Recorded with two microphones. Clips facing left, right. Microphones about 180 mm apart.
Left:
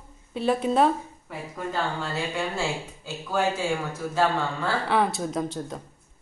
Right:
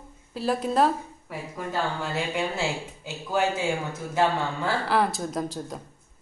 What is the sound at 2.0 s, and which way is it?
Speech, 20° right (ahead or behind).